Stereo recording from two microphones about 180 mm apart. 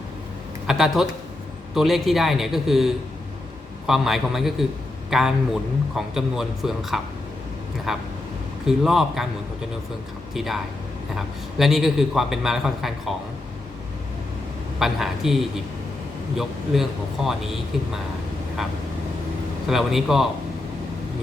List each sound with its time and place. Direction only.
0.7 s a man's voice: centre (ahead or behind)
10.3 s a man's voice: centre (ahead or behind)
14.8 s a man's voice: centre (ahead or behind)
16.4 s a man's voice: centre (ahead or behind)
19.6 s a man's voice: centre (ahead or behind)